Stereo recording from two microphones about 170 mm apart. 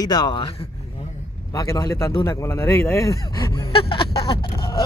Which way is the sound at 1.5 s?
20° left (ahead or behind).